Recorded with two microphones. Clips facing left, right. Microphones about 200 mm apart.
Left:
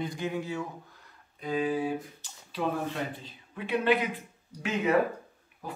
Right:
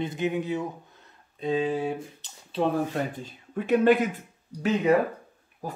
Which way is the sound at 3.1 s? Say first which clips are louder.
Right 8 dB; 45° right (ahead or behind).